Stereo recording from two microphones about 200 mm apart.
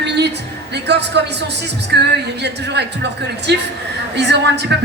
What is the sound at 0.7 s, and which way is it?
Speech, 55° right (ahead or behind).